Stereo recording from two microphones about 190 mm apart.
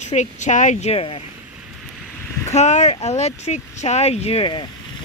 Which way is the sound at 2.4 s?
35° left (ahead or behind).